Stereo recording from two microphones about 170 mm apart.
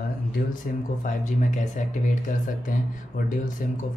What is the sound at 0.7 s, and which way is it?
Speech, 55° left (ahead or behind).